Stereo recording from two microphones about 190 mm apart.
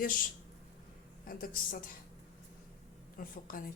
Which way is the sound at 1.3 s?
45° left (ahead or behind).